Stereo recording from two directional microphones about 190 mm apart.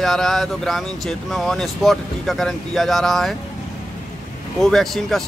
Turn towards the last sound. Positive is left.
turn(degrees=0)  # may be behind; listen again after turning